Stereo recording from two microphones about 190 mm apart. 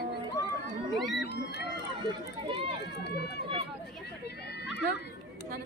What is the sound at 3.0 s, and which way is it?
Run, 60° left (ahead or behind).